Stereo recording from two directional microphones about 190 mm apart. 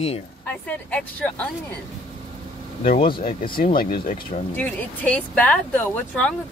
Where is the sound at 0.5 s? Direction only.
5° left (ahead or behind).